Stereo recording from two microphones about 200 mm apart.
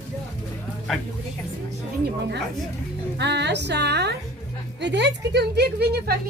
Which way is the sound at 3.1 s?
60° right (ahead or behind).